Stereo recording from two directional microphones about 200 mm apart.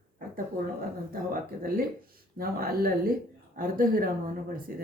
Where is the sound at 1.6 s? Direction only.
45° right (ahead or behind).